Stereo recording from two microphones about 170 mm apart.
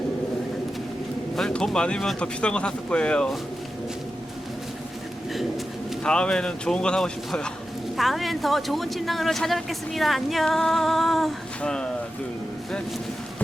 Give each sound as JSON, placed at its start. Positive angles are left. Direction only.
{"t": 1.4, "sound": "a man's voice", "side_deg": 5}
{"t": 6.0, "sound": "a man's voice", "side_deg": 5}